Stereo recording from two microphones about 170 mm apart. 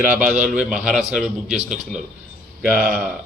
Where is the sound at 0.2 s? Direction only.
5° right (ahead or behind).